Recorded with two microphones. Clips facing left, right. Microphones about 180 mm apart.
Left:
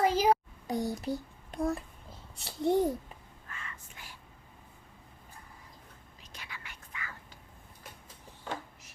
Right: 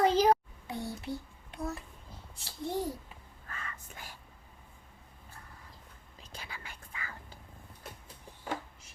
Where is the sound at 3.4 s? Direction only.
40° right (ahead or behind).